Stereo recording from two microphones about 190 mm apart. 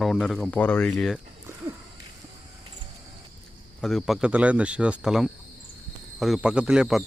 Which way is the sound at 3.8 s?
Centre (ahead or behind).